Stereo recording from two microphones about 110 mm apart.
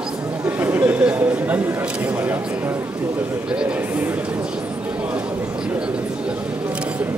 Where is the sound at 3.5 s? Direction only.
10° right (ahead or behind).